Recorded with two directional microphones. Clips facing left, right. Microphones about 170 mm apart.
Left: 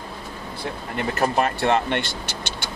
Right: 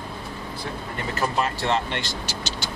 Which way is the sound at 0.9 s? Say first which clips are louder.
Left 4 dB; 55° left (ahead or behind).